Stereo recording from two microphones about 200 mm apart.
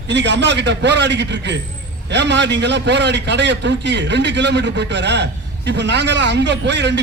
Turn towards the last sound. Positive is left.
turn(degrees=-60)  # may be behind; listen again after turning